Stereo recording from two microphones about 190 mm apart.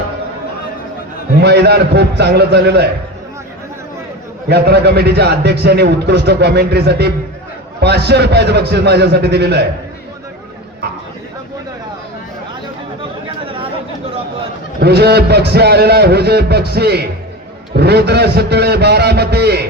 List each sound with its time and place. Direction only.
1.4 s a man's voice: 60° right (ahead or behind)
4.4 s a man's voice: 60° right (ahead or behind)
13.2 s chatter: 30° right (ahead or behind)
14.8 s a man's voice: 60° right (ahead or behind)